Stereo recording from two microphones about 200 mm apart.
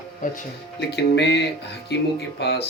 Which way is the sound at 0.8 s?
55° left (ahead or behind).